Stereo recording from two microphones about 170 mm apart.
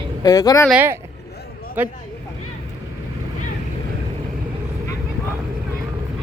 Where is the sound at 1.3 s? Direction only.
70° left (ahead or behind).